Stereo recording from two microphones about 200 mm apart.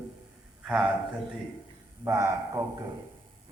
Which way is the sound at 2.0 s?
15° right (ahead or behind).